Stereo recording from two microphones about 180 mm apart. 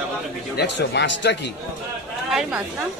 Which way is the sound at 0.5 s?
65° left (ahead or behind).